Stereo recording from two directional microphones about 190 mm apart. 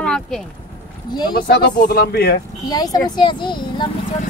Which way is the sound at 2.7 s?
20° left (ahead or behind).